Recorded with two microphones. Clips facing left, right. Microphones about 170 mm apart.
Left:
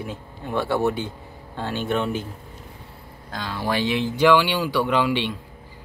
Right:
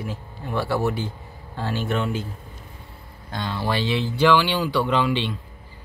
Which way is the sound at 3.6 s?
15° left (ahead or behind).